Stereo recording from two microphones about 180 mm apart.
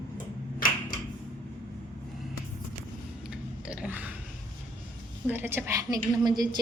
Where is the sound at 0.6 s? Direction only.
50° left (ahead or behind).